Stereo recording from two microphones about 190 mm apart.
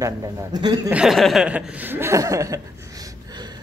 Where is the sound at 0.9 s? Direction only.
Centre (ahead or behind); by 3.5 s 20° right (ahead or behind).